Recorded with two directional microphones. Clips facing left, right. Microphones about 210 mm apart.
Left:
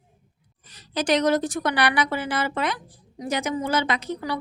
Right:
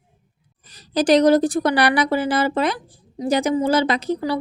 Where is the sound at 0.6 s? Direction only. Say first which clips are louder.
Right 7 dB; 35° right (ahead or behind).